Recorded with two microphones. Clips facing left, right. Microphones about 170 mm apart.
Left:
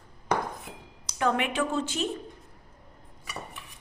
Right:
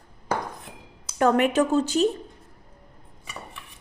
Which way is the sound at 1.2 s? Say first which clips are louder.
Right 7 dB; 45° right (ahead or behind).